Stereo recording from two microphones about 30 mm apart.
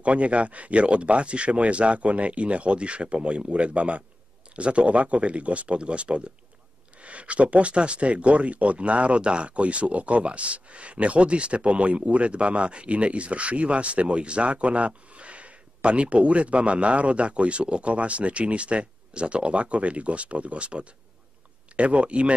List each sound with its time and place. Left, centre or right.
0.0 s speech: right